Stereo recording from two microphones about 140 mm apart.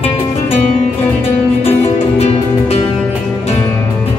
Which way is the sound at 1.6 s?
45° left (ahead or behind).